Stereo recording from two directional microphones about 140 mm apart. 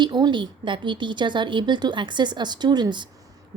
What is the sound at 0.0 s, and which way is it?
A woman's voice, 30° right (ahead or behind).